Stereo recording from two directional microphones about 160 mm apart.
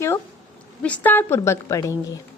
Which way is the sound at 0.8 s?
10° left (ahead or behind).